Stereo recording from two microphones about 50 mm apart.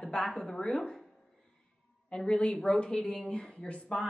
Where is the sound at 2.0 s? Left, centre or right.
Centre.